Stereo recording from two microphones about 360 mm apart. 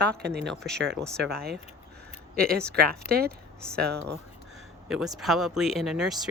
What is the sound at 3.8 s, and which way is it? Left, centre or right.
Speech, centre.